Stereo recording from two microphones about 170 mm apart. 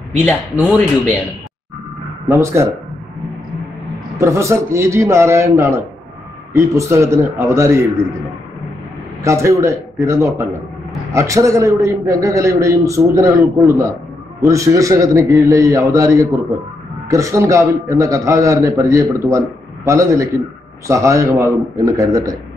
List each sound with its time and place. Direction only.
2.2 s a man's voice: 15° right (ahead or behind)
4.2 s a man's voice: 15° right (ahead or behind)
9.2 s a man's voice: 15° right (ahead or behind)